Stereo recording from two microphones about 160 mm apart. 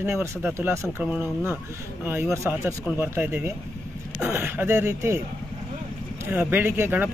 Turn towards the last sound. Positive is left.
turn(degrees=-10)  # may be behind; listen again after turning